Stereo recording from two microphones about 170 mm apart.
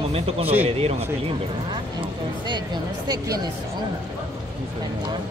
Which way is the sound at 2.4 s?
25° right (ahead or behind).